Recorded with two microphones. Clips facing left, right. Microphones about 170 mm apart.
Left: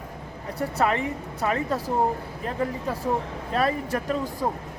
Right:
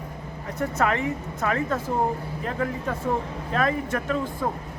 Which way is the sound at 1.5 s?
20° left (ahead or behind).